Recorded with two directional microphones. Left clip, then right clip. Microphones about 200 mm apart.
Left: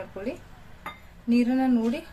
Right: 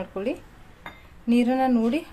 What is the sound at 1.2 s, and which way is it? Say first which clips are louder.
Speech: right 3 dB; 40° right (ahead or behind).